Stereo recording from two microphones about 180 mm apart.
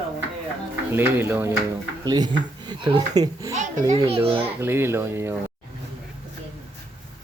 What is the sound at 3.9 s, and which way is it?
Speech, 35° right (ahead or behind).